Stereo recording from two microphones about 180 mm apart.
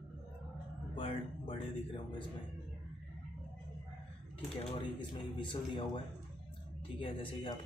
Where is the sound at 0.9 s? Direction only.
30° left (ahead or behind).